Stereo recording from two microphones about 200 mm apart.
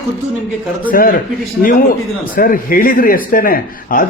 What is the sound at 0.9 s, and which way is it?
Speech, 45° left (ahead or behind).